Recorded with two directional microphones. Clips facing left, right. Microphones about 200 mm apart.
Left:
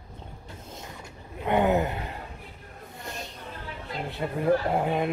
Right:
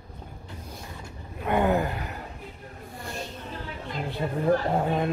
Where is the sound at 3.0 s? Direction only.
20° left (ahead or behind).